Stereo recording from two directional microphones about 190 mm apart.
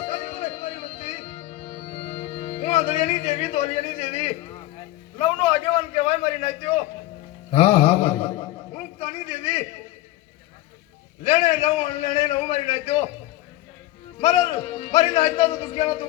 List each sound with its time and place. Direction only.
0.0 s music: 35° left (ahead or behind)
5.1 s a man's voice: 30° left (ahead or behind)
11.2 s a man's voice: 30° left (ahead or behind)
14.2 s a man's voice: 25° left (ahead or behind)